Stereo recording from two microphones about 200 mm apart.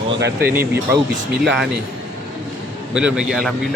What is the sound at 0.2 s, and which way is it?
Speech, 55° right (ahead or behind).